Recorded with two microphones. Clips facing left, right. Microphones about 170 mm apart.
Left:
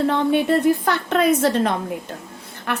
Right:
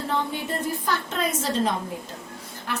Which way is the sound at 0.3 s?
65° left (ahead or behind).